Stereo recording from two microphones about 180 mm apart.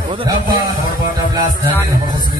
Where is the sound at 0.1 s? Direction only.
25° right (ahead or behind).